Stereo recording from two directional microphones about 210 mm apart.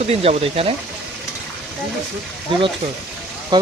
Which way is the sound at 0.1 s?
30° right (ahead or behind).